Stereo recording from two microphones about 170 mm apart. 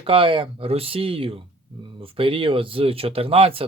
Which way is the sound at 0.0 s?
30° right (ahead or behind).